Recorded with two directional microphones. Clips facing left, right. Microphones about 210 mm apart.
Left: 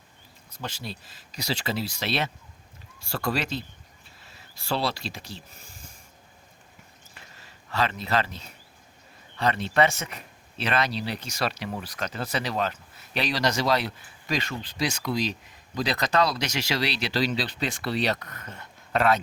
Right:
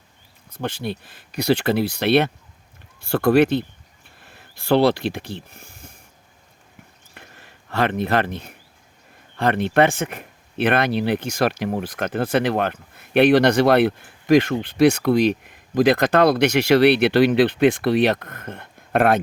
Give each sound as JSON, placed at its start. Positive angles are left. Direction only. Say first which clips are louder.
{"t": 0.6, "sound": "speech", "louder": "right 10 dB", "side_deg": -60}
{"t": 7.1, "sound": "a sound", "louder": "right 5 dB", "side_deg": -55}
{"t": 9.3, "sound": "speech", "louder": "right 6 dB", "side_deg": -55}